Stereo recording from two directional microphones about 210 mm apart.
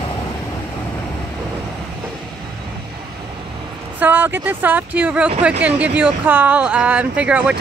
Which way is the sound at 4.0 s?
10° right (ahead or behind).